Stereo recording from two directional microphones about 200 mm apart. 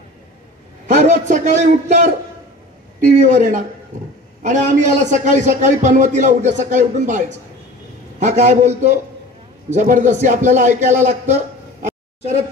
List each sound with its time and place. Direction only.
0.9 s a man's voice: 40° right (ahead or behind)
3.1 s a man's voice: 35° right (ahead or behind)